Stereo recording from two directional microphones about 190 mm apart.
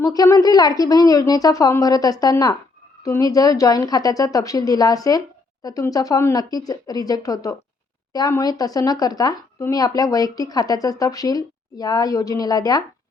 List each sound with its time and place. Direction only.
0.0 s speech: 20° left (ahead or behind)